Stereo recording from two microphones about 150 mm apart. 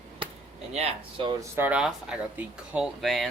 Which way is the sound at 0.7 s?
45° right (ahead or behind).